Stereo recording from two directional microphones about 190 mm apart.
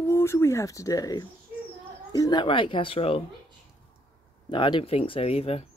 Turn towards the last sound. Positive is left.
turn(degrees=30)  # may be behind; listen again after turning